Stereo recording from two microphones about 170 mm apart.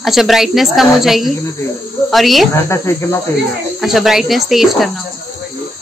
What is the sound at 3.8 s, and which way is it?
A woman's voice, centre (ahead or behind).